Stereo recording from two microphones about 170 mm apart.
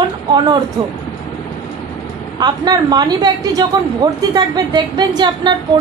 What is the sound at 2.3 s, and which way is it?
A woman's voice, 25° right (ahead or behind).